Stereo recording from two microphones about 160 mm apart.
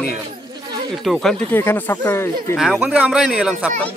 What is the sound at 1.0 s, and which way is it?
Speech, centre (ahead or behind).